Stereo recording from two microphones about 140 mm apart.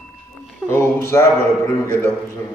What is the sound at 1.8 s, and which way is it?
Speech, 15° left (ahead or behind).